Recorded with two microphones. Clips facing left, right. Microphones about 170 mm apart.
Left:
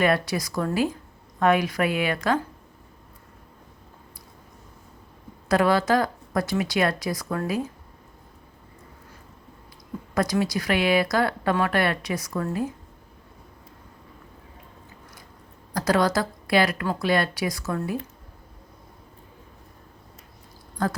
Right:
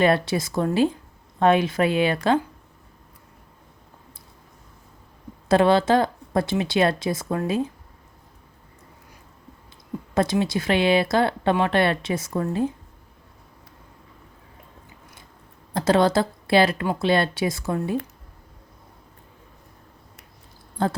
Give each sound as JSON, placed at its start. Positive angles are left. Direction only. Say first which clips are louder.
{"t": 0.0, "sound": "speech", "louder": "right 3 dB", "side_deg": -25}
{"t": 5.5, "sound": "speech", "louder": "right 3 dB", "side_deg": -25}
{"t": 10.2, "sound": "speech", "louder": "right 2 dB", "side_deg": -25}
{"t": 15.7, "sound": "speech", "louder": "right 3 dB", "side_deg": -25}
{"t": 20.8, "sound": "speech", "louder": "right 2 dB", "side_deg": -30}